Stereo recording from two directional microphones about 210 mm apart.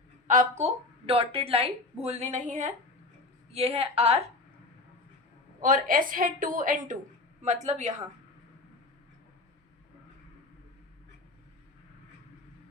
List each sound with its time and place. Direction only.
0.3 s a woman's voice: 35° right (ahead or behind)
5.5 s a woman's voice: 40° right (ahead or behind)